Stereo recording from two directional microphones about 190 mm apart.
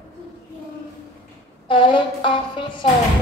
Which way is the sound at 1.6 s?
25° left (ahead or behind).